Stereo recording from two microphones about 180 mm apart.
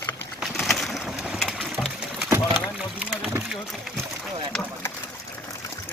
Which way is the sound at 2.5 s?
Centre (ahead or behind).